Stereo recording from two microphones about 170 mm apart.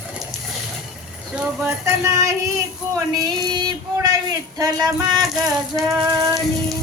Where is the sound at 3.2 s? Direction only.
25° right (ahead or behind).